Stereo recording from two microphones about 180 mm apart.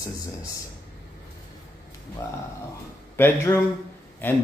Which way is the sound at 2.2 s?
15° left (ahead or behind).